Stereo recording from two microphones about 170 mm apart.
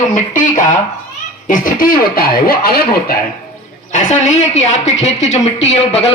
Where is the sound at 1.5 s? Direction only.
55° left (ahead or behind).